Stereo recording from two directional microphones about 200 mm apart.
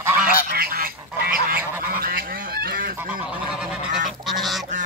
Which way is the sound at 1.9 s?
45° right (ahead or behind).